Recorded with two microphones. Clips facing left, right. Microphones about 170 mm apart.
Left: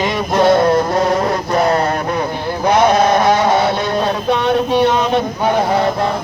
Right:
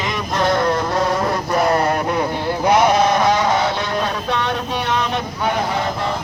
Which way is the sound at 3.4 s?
25° left (ahead or behind).